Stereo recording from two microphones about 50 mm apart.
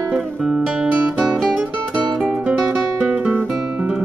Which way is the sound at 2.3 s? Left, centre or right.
Centre.